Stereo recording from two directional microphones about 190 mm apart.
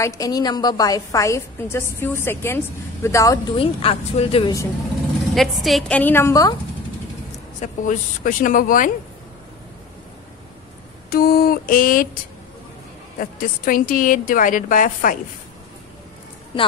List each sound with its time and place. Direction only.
0.0 s a woman's voice: 20° left (ahead or behind)
3.5 s speech: 30° left (ahead or behind)
5.3 s a woman's voice: centre (ahead or behind); by 6.5 s 15° left (ahead or behind)
7.6 s a woman's voice: 40° left (ahead or behind)
11.1 s a woman's voice: 50° left (ahead or behind)
13.2 s a woman's voice: 45° left (ahead or behind)